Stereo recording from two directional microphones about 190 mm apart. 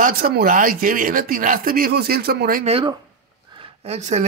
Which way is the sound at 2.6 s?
30° right (ahead or behind).